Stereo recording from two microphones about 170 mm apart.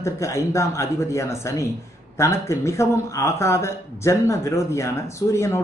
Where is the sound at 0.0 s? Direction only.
15° left (ahead or behind).